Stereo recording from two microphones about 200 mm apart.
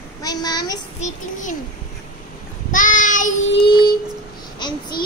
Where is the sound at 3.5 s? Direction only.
25° left (ahead or behind).